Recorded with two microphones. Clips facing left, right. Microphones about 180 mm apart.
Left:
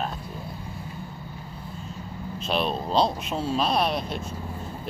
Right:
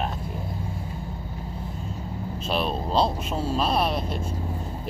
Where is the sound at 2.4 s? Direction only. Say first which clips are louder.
Left 1 dB; 5° right (ahead or behind).